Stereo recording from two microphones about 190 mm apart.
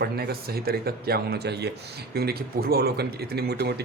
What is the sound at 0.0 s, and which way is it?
Speech, 55° right (ahead or behind).